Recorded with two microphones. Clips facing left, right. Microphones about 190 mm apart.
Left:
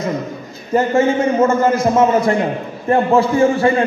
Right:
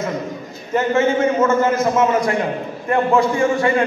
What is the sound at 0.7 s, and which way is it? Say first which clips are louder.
A man's voice: left 2 dB; 35° left (ahead or behind).